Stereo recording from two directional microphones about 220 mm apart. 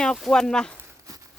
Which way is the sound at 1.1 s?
15° right (ahead or behind).